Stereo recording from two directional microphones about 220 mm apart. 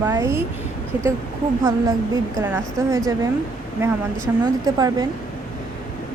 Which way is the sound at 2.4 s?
10° right (ahead or behind).